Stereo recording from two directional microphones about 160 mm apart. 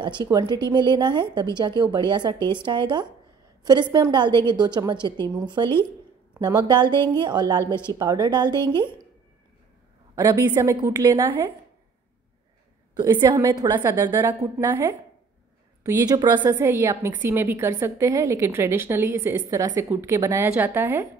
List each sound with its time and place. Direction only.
0.2 s a woman's voice: 25° right (ahead or behind)
10.1 s a woman's voice: 20° right (ahead or behind)
13.4 s a woman's voice: 25° right (ahead or behind)
16.5 s a woman's voice: 15° right (ahead or behind)